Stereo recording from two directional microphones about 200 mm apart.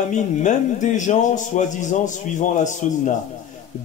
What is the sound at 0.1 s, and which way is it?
Speech, 40° left (ahead or behind).